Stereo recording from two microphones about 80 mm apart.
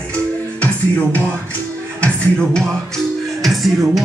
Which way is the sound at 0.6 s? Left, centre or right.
Centre.